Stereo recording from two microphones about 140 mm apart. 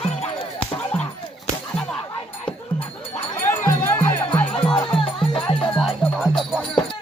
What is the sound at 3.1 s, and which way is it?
Music, 15° left (ahead or behind).